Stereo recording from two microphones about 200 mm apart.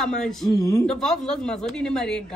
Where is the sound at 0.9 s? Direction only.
5° left (ahead or behind).